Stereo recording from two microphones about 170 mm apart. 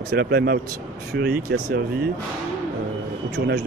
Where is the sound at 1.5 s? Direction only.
70° right (ahead or behind).